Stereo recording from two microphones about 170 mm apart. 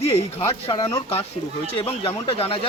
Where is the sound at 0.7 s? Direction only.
25° left (ahead or behind).